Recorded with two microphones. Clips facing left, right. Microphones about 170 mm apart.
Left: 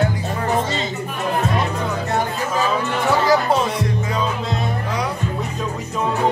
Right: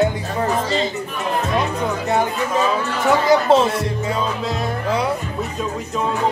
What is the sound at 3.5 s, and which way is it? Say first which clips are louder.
Speech: right 5 dB; 25° right (ahead or behind).